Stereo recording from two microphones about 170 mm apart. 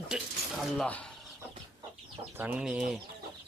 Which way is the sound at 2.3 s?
10° right (ahead or behind).